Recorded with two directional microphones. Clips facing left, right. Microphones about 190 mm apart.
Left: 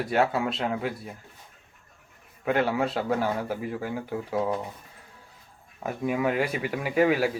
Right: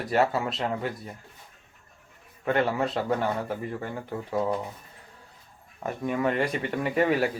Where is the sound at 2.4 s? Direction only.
Centre (ahead or behind).